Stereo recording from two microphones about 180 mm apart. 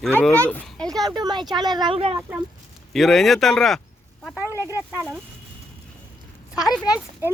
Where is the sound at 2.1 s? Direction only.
10° right (ahead or behind).